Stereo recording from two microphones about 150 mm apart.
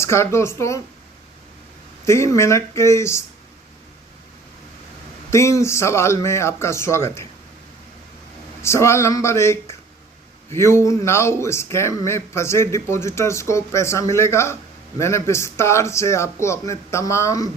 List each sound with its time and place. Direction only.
0.0 s speech: 15° left (ahead or behind)
2.0 s speech: 20° left (ahead or behind)
5.3 s speech: 20° left (ahead or behind)
8.6 s speech: 20° left (ahead or behind)